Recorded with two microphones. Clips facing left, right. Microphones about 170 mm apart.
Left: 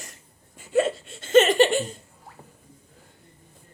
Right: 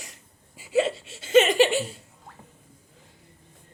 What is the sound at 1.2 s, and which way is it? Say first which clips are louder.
Laughter: left 1 dB; 50° left (ahead or behind).